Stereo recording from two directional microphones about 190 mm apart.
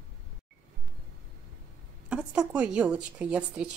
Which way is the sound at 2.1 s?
5° right (ahead or behind).